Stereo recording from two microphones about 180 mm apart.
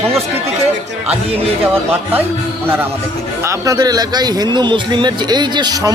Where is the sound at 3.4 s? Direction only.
20° right (ahead or behind).